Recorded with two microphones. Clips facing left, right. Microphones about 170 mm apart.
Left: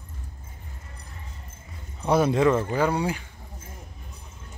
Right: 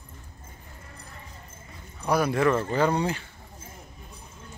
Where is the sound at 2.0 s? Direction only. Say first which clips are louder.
Left 3 dB; 25° left (ahead or behind).